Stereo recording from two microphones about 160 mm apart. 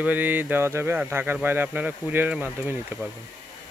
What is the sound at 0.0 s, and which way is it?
Speech, 10° right (ahead or behind).